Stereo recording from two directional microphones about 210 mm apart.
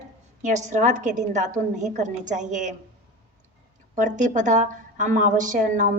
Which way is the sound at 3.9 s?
35° right (ahead or behind).